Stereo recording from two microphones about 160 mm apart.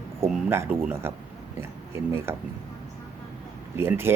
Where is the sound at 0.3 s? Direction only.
15° right (ahead or behind).